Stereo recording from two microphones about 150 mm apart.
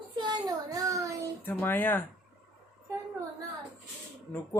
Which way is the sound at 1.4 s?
15° left (ahead or behind).